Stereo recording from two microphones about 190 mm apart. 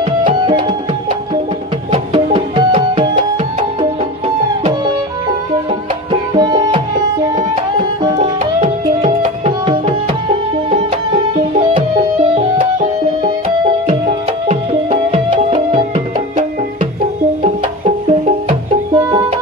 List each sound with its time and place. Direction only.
0.3 s music: 25° right (ahead or behind)
2.3 s music: 30° right (ahead or behind)
6.3 s music: 20° right (ahead or behind)
8.2 s tabla: 35° right (ahead or behind)
13.8 s music: 40° right (ahead or behind)
18.9 s music: 20° right (ahead or behind)